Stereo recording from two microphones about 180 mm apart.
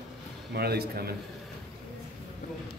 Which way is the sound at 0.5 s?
60° right (ahead or behind).